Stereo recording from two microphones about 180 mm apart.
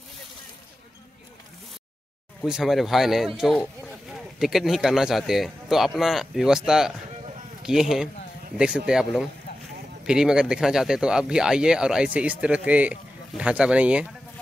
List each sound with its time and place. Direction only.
2.4 s speech: centre (ahead or behind)